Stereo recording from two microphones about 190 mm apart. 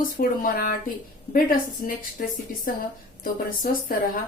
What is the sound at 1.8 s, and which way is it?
Speech, 45° left (ahead or behind).